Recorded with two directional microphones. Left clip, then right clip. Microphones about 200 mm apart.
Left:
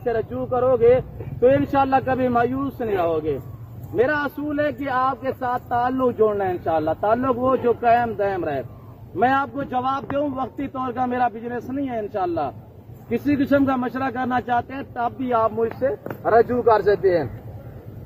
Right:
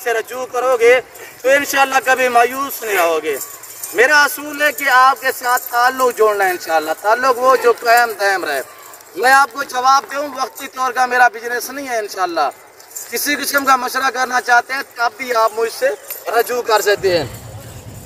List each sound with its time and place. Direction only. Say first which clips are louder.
0.7 s a man's voice: right 5 dB; 30° right (ahead or behind); by 17.2 s centre (ahead or behind)